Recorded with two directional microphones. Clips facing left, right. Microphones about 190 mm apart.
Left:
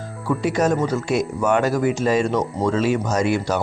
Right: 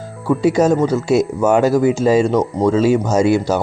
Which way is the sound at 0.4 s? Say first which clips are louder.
Right 6 dB; 30° right (ahead or behind).